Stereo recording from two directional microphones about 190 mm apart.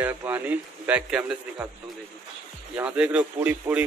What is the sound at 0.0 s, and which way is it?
Speech, 10° right (ahead or behind).